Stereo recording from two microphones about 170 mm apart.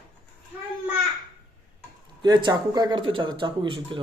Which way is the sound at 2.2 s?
25° right (ahead or behind).